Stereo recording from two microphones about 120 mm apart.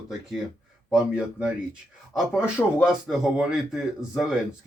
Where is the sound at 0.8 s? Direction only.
5° right (ahead or behind).